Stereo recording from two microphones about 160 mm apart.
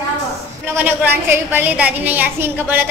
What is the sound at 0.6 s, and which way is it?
A woman's voice, 15° right (ahead or behind).